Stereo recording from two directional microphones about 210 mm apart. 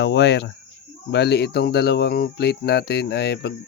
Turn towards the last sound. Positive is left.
turn(degrees=50)  # may be behind; listen again after turning